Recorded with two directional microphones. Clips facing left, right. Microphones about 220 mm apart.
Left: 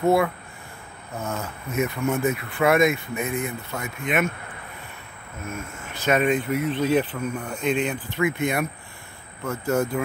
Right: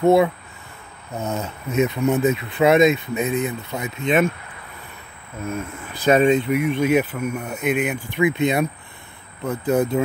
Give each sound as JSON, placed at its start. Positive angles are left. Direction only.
{"t": 0.0, "sound": "speech", "side_deg": -20}
{"t": 5.9, "sound": "speech", "side_deg": -35}